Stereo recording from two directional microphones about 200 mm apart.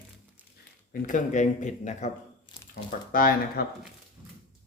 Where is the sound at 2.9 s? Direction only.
45° left (ahead or behind).